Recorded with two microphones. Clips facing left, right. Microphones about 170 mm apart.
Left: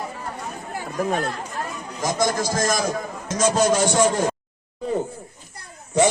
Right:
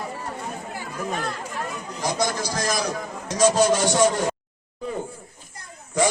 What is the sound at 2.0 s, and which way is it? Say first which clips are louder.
A man's voice: left 3 dB; 45° left (ahead or behind).